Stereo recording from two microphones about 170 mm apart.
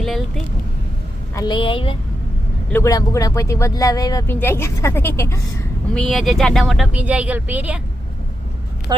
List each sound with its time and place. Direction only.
0.0 s vehicle: centre (ahead or behind)
1.4 s a woman's voice: 25° left (ahead or behind)
2.7 s speech: 20° left (ahead or behind)
5.9 s speech: 5° left (ahead or behind)
8.9 s speech: 20° right (ahead or behind)